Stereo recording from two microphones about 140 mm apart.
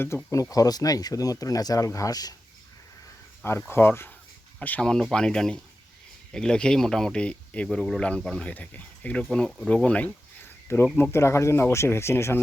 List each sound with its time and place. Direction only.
0.1 s speech: 15° left (ahead or behind)
3.4 s speech: 15° left (ahead or behind)